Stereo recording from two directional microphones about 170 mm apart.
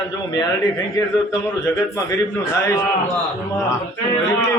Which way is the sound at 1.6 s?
15° left (ahead or behind).